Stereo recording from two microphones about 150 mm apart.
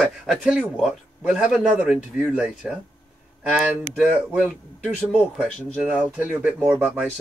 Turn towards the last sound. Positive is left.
turn(degrees=-10)  # may be behind; listen again after turning